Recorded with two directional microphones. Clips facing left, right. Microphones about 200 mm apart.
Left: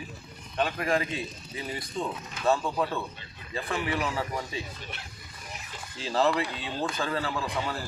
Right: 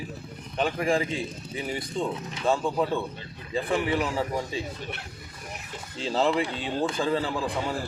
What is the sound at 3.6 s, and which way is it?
Speech, 25° right (ahead or behind).